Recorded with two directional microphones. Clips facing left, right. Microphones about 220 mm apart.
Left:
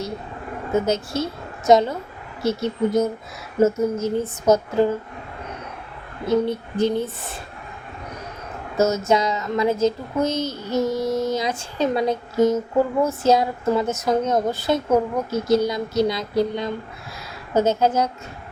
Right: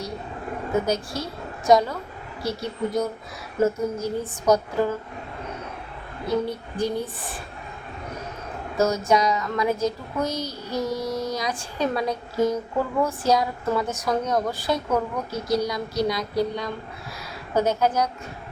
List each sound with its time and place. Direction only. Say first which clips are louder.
0.9 s a woman's voice: left 4 dB; 25° left (ahead or behind)
6.2 s speech: left 5 dB; 25° left (ahead or behind)
8.8 s speech: left 2 dB; 25° left (ahead or behind)